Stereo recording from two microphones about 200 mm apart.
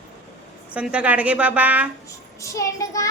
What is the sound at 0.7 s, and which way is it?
A woman's voice, 5° right (ahead or behind).